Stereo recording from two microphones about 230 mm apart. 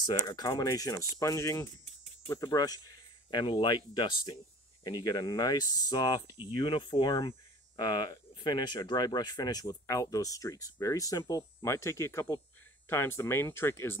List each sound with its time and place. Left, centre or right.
0.0 s speech: centre